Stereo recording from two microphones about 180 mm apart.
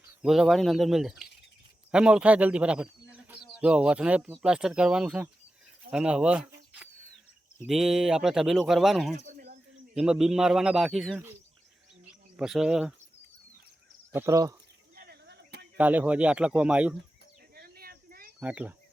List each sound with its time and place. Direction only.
0.2 s speech: centre (ahead or behind)
12.4 s speech: 5° right (ahead or behind)
14.1 s speech: 15° right (ahead or behind)
14.9 s a sound: 60° right (ahead or behind)
15.8 s speech: 10° right (ahead or behind)
17.5 s a sound: 55° right (ahead or behind)
18.3 s speech: 10° right (ahead or behind)